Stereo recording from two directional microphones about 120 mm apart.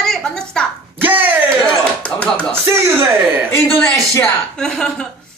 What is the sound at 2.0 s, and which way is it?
Speech, 10° left (ahead or behind).